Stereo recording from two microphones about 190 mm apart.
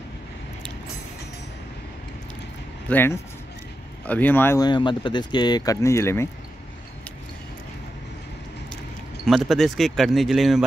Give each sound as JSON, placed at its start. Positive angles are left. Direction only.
{"t": 2.9, "sound": "speech", "side_deg": 10}
{"t": 9.2, "sound": "speech", "side_deg": 0}